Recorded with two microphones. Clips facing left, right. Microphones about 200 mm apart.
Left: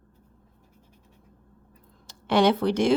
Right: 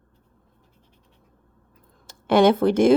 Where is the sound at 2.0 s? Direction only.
50° right (ahead or behind).